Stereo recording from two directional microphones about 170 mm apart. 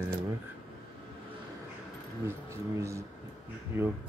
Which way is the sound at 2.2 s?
15° right (ahead or behind).